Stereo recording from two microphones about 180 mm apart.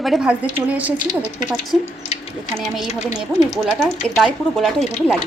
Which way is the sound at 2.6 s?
Centre (ahead or behind).